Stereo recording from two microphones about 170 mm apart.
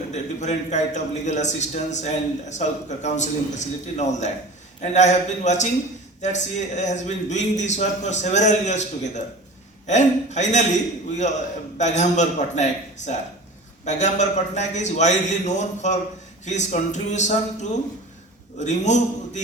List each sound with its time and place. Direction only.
0.1 s a man's voice: 45° left (ahead or behind)